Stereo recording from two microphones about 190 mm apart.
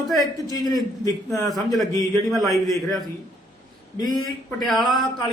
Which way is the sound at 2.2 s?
Centre (ahead or behind).